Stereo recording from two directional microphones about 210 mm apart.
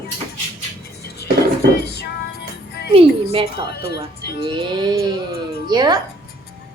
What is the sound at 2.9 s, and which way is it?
Speech, 25° right (ahead or behind).